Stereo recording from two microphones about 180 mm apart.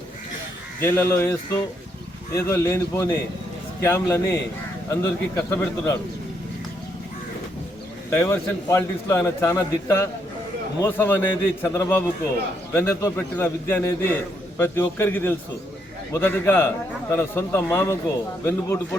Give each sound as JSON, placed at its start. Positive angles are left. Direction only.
{"t": 0.8, "sound": "a man's voice", "side_deg": 15}
{"t": 8.1, "sound": "a man's voice", "side_deg": 15}